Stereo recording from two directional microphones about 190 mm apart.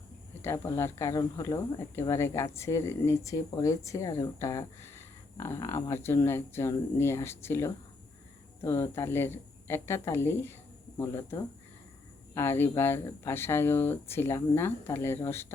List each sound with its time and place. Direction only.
0.4 s speech: 15° left (ahead or behind)